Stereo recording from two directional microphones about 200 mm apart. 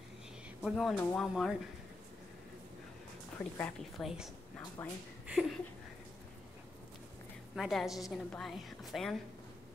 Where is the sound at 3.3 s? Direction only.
10° left (ahead or behind).